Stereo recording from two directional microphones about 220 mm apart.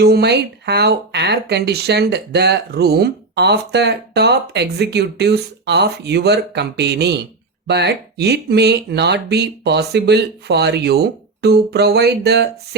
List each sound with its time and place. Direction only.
0.0 s speech: 45° right (ahead or behind)